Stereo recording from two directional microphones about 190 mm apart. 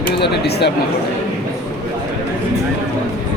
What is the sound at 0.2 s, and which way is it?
Speech, 60° left (ahead or behind).